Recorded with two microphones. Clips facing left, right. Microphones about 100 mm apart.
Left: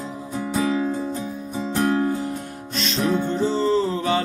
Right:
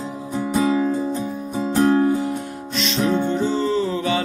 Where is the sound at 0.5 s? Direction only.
20° right (ahead or behind).